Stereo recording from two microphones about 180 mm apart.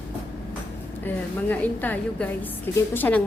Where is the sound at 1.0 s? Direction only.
10° left (ahead or behind).